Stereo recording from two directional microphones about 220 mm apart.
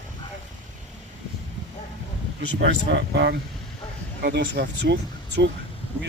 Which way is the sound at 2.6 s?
50° right (ahead or behind).